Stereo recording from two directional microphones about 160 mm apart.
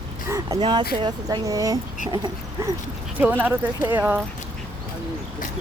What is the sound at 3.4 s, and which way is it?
Speech, 10° right (ahead or behind).